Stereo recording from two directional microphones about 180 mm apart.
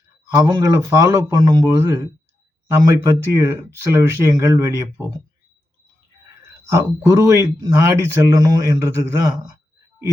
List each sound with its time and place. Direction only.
0.3 s speech: 15° right (ahead or behind)
6.7 s speech: 15° right (ahead or behind)